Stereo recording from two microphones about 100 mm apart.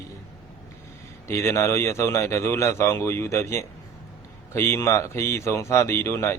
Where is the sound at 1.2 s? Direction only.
25° left (ahead or behind).